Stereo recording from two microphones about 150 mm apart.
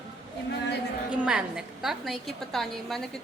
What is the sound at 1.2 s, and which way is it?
A woman's voice, 5° right (ahead or behind).